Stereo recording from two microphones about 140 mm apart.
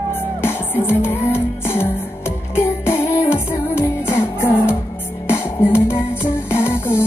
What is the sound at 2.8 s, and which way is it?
Music, 15° left (ahead or behind).